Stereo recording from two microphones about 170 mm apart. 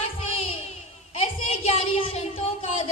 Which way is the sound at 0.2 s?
35° left (ahead or behind).